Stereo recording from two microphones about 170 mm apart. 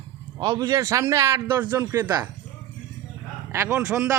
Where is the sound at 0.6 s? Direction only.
15° right (ahead or behind).